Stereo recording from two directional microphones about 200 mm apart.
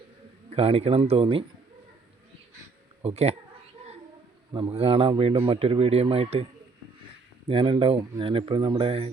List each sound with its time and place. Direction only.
0.5 s speech: 30° right (ahead or behind)
3.0 s speech: 30° right (ahead or behind)
4.5 s speech: 30° right (ahead or behind)